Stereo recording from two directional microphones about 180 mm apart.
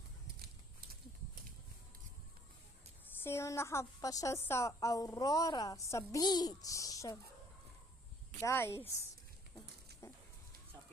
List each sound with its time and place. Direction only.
3.2 s a woman's voice: 15° left (ahead or behind)
8.4 s a woman's voice: 15° left (ahead or behind)
9.9 s a sound: 65° right (ahead or behind)